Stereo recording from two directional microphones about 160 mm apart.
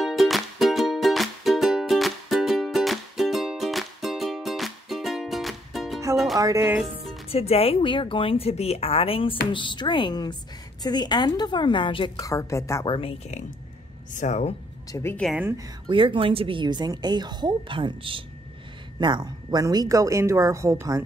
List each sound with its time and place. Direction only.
0.0 s music: centre (ahead or behind)
6.3 s speech: 20° right (ahead or behind)
7.2 s a woman's voice: 40° left (ahead or behind)
12.2 s a woman's voice: 20° left (ahead or behind)
12.8 s speech: 35° left (ahead or behind)
14.1 s speech: 45° left (ahead or behind)
14.9 s a woman's voice: 15° left (ahead or behind)
15.3 s speech: 15° right (ahead or behind)
15.9 s a woman's voice: 30° right (ahead or behind)